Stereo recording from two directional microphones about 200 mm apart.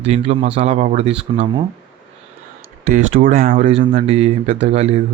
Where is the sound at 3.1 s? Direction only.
45° right (ahead or behind).